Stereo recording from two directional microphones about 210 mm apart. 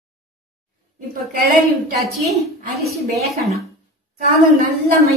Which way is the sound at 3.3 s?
Centre (ahead or behind).